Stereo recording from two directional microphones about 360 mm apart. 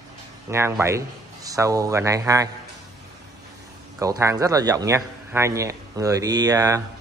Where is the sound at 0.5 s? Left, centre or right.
Centre.